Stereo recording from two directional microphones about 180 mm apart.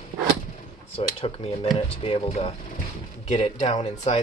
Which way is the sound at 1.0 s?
30° left (ahead or behind).